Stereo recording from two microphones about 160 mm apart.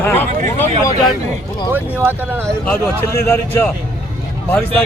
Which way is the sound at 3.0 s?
15° left (ahead or behind).